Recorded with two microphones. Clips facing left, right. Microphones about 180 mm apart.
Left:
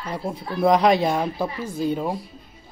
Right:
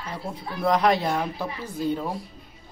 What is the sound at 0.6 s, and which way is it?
Speech, 15° left (ahead or behind).